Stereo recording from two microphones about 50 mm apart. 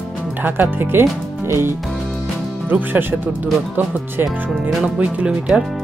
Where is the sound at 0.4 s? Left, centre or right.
Right.